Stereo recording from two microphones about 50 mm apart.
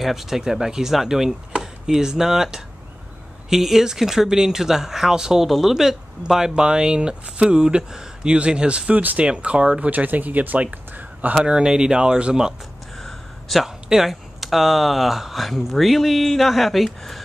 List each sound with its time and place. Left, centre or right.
0.0 s speech: centre; by 8.9 s right
8.9 s speech: right
9.2 s speech: right
11.3 s speech: centre
13.0 s a sound: centre
13.8 s speech: centre